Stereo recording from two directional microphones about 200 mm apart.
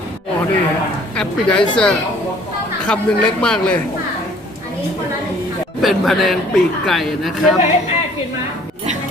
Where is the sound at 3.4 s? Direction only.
5° left (ahead or behind).